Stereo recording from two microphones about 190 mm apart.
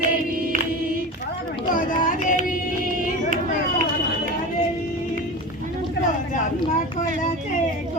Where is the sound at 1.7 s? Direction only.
45° left (ahead or behind).